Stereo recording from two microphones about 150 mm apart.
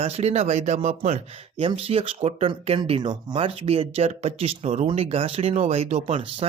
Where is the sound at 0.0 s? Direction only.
45° right (ahead or behind).